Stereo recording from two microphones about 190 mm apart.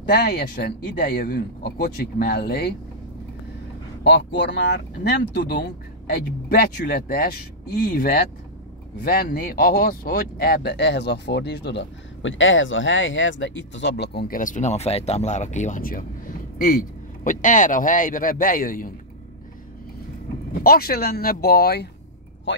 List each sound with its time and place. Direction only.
0.0 s speech: 55° left (ahead or behind)
4.0 s speech: 65° left (ahead or behind); by 18.9 s 45° left (ahead or behind)
20.5 s speech: 50° left (ahead or behind)